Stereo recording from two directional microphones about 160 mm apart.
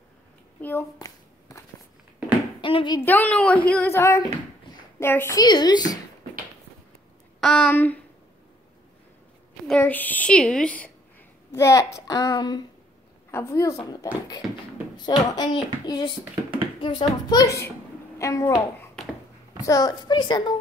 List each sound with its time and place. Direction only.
0.6 s hands: 10° left (ahead or behind)
0.9 s shuffling cards: 20° left (ahead or behind)
2.6 s speech: 30° left (ahead or behind)
3.1 s a woman's voice: 10° left (ahead or behind)
5.4 s speech: 25° left (ahead or behind)
7.3 s a sound: centre (ahead or behind)
7.7 s a woman's voice: 10° left (ahead or behind)
9.7 s a woman's voice: 10° left (ahead or behind)
11.5 s a woman's voice: 20° left (ahead or behind)